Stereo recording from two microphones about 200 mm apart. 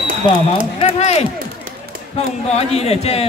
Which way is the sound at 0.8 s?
30° left (ahead or behind).